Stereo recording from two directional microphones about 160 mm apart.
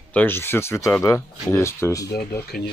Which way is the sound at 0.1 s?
10° left (ahead or behind).